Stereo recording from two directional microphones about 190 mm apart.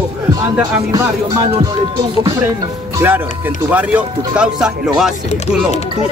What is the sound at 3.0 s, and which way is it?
Speech, 10° right (ahead or behind).